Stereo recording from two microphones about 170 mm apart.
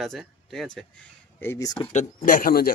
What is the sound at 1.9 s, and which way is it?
Speech, 50° left (ahead or behind).